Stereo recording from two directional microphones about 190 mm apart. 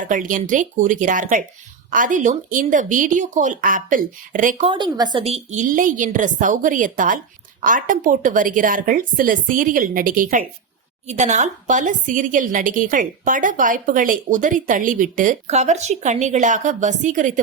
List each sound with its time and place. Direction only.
0.0 s a woman's voice: 45° right (ahead or behind)
4.7 s a woman's voice: 20° right (ahead or behind)
5.3 s a woman's voice: 40° right (ahead or behind)